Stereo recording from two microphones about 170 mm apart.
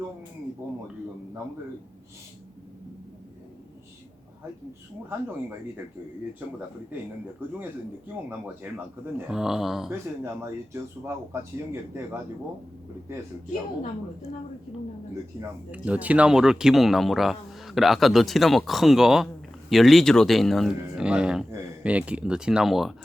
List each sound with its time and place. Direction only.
6.4 s speech: 10° right (ahead or behind)
8.6 s speech: 10° right (ahead or behind)
10.2 s speech: 15° right (ahead or behind)
15.4 s speech: 10° right (ahead or behind)